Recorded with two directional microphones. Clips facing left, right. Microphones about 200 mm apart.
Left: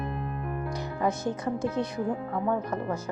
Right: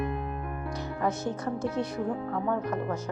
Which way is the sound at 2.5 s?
10° left (ahead or behind).